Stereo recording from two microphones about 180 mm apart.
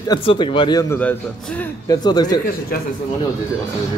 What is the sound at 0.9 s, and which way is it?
Speech, 10° left (ahead or behind).